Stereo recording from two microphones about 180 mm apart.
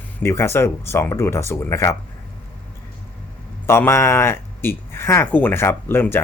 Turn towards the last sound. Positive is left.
turn(degrees=10)  # may be behind; listen again after turning